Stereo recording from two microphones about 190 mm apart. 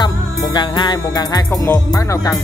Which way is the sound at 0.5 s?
25° left (ahead or behind).